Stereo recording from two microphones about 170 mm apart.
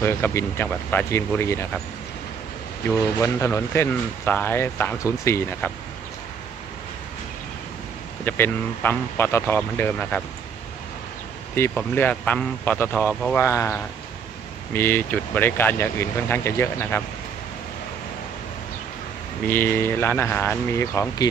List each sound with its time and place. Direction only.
0.0 s speech: 15° left (ahead or behind)
2.9 s speech: 15° left (ahead or behind)
8.2 s speech: 10° left (ahead or behind)
11.5 s speech: 15° left (ahead or behind)
13.1 s speech: 5° left (ahead or behind)
13.4 s speech: 15° left (ahead or behind)
19.4 s speech: 10° left (ahead or behind)